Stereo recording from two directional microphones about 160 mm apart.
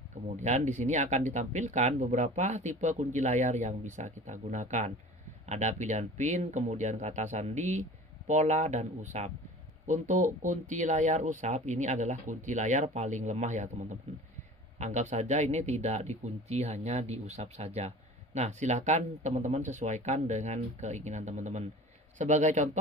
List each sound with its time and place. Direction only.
0.1 s a man's voice: 45° right (ahead or behind)